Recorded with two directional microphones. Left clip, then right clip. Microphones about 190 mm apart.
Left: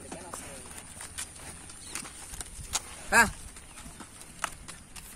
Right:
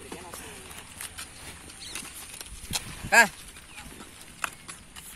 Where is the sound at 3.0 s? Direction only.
65° left (ahead or behind).